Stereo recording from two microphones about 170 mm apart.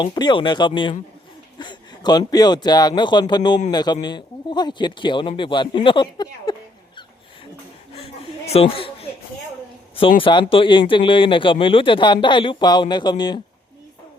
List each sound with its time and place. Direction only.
0.0 s speech: 25° left (ahead or behind)
7.9 s a sound: 35° left (ahead or behind)
10.2 s speech: 30° left (ahead or behind)